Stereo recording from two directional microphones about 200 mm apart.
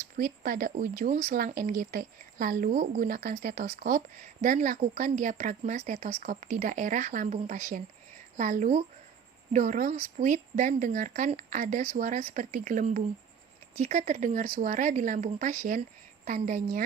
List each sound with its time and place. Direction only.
0.2 s a woman's voice: 45° right (ahead or behind)